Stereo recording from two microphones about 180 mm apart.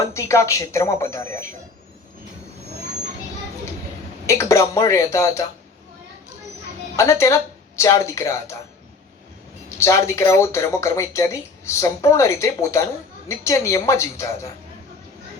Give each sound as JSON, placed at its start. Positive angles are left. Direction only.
{"t": 0.0, "sound": "speech", "side_deg": 15}
{"t": 4.3, "sound": "speech", "side_deg": 15}
{"t": 6.9, "sound": "speech", "side_deg": 15}
{"t": 9.6, "sound": "speech", "side_deg": 15}